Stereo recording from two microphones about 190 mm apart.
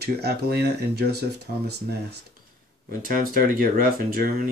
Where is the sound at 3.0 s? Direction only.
50° right (ahead or behind).